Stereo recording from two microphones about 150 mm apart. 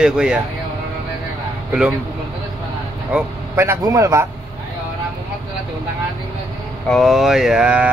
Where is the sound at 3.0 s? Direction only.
10° right (ahead or behind).